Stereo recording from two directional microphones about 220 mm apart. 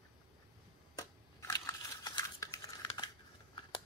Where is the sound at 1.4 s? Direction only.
15° left (ahead or behind).